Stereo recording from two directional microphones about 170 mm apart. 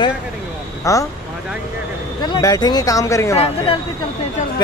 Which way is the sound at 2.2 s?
20° left (ahead or behind).